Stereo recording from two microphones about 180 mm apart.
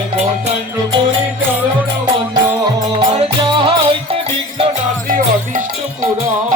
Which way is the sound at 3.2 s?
30° right (ahead or behind).